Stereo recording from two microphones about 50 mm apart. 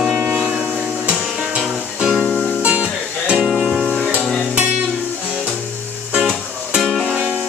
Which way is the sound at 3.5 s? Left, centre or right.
Centre.